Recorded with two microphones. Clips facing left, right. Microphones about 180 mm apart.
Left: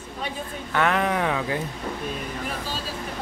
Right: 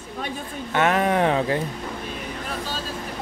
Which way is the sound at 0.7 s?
20° right (ahead or behind).